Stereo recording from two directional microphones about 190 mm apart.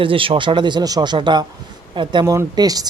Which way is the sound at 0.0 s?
30° right (ahead or behind).